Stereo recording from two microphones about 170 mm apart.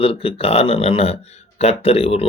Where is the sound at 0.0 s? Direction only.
35° left (ahead or behind).